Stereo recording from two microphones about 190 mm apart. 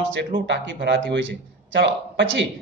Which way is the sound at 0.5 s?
65° right (ahead or behind).